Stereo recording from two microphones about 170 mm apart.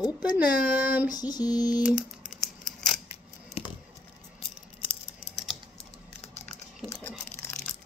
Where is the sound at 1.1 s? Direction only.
25° left (ahead or behind).